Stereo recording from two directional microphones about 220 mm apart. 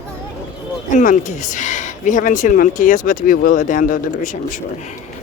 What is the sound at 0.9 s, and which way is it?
Speech, 35° left (ahead or behind).